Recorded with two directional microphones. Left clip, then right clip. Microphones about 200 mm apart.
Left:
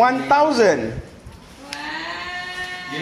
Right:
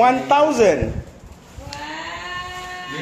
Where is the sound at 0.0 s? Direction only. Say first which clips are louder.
Right 1 dB; centre (ahead or behind).